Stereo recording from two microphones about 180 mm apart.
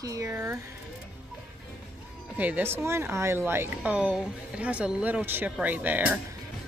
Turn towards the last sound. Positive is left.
turn(degrees=-10)  # may be behind; listen again after turning